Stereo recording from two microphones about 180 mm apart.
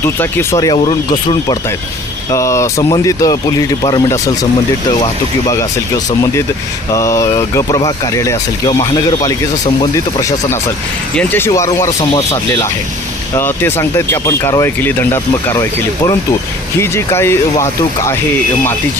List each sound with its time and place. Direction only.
0.0 s speech: 10° left (ahead or behind)
6.9 s speech: 15° left (ahead or behind)
13.3 s speech: 10° left (ahead or behind)
16.8 s speech: 15° left (ahead or behind)